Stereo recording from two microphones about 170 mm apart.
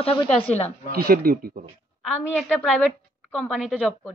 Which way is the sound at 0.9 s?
60° right (ahead or behind).